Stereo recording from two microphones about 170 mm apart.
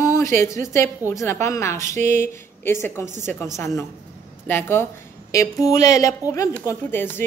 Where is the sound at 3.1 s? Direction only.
45° right (ahead or behind).